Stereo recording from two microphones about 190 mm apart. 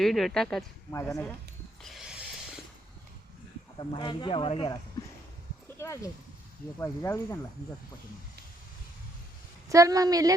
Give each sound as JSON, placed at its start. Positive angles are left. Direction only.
{"t": 0.0, "sound": "speech", "side_deg": 0}
{"t": 0.9, "sound": "speech", "side_deg": 15}
{"t": 1.8, "sound": "a sound", "side_deg": 0}
{"t": 3.8, "sound": "speech", "side_deg": 25}
{"t": 5.8, "sound": "speech", "side_deg": 15}
{"t": 9.6, "sound": "a woman's voice", "side_deg": -15}